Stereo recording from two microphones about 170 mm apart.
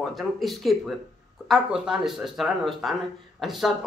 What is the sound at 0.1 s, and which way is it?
Speech, centre (ahead or behind).